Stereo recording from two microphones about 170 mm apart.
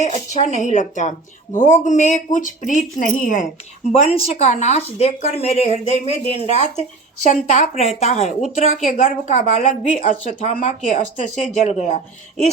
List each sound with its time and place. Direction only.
0.0 s a woman's voice: 40° left (ahead or behind)
3.8 s a woman's voice: 35° left (ahead or behind)